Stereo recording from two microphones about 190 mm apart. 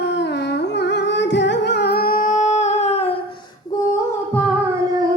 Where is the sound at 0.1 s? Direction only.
65° left (ahead or behind); by 3.2 s 30° left (ahead or behind).